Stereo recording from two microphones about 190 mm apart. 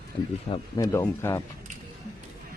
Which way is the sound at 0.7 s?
15° left (ahead or behind).